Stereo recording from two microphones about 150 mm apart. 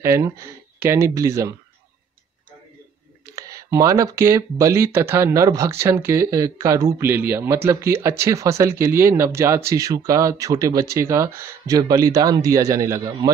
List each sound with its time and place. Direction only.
0.0 s speech: 20° right (ahead or behind)
3.3 s speech: 20° right (ahead or behind)